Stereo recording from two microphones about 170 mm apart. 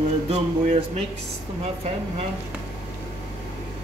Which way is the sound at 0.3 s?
40° right (ahead or behind).